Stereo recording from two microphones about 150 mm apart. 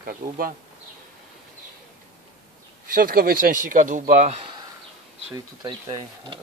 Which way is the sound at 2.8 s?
70° right (ahead or behind).